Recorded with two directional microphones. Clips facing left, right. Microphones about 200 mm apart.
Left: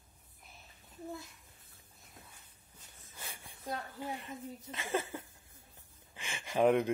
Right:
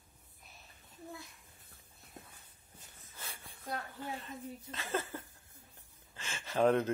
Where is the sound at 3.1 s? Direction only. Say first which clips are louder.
Left 1 dB; 15° left (ahead or behind).